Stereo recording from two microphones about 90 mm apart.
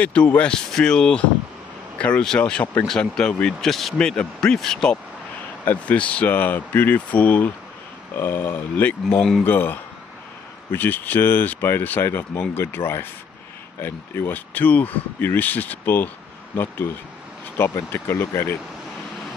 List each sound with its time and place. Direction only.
0.0 s speech: 15° left (ahead or behind)